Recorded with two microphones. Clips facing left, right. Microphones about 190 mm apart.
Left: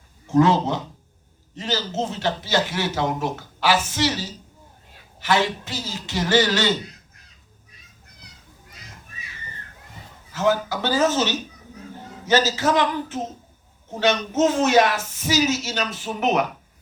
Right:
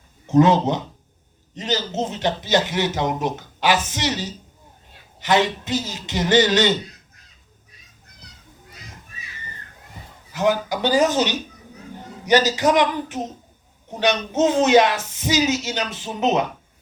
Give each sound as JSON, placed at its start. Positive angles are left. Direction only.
{"t": 0.3, "sound": "speech", "side_deg": -20}
{"t": 10.3, "sound": "speech", "side_deg": -15}